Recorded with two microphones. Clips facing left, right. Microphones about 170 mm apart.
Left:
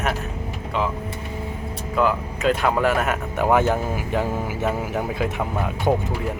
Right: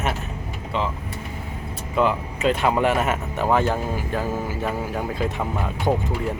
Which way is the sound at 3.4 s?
15° left (ahead or behind).